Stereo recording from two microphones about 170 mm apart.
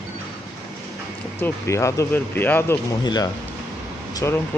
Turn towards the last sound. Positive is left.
turn(degrees=15)  # may be behind; listen again after turning